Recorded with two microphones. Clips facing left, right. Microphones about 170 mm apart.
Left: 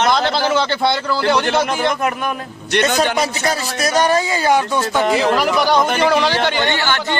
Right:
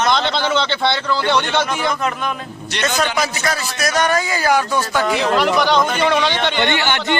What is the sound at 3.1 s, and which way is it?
A man's voice, 30° left (ahead or behind).